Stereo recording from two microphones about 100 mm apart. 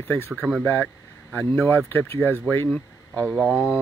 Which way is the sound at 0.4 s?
10° right (ahead or behind).